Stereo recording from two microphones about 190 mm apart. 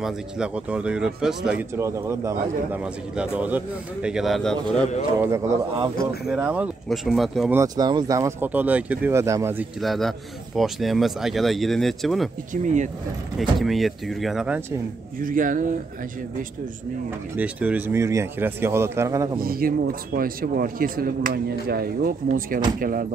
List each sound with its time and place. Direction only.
0.0 s speech: 5° right (ahead or behind)
5.2 s speech: 15° right (ahead or behind)
6.2 s speech: 5° right (ahead or behind)
7.5 s speech: 20° right (ahead or behind)
9.8 s speech: centre (ahead or behind)
12.5 s speech: 45° right (ahead or behind)
13.4 s speech: centre (ahead or behind)
15.2 s speech: 45° right (ahead or behind)
17.4 s speech: 10° right (ahead or behind)
19.4 s speech: 50° right (ahead or behind)